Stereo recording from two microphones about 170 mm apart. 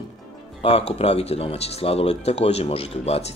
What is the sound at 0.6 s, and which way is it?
Speech, 35° left (ahead or behind).